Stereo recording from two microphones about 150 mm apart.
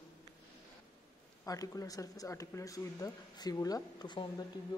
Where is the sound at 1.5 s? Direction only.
25° left (ahead or behind).